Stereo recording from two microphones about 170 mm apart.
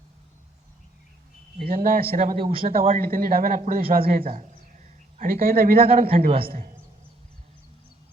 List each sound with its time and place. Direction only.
1.5 s speech: 60° right (ahead or behind)
2.4 s a man's voice: 30° right (ahead or behind)
3.0 s speech: 55° right (ahead or behind)